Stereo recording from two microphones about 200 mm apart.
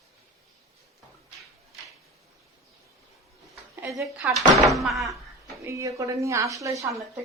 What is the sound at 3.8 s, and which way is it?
A woman's voice, 10° right (ahead or behind).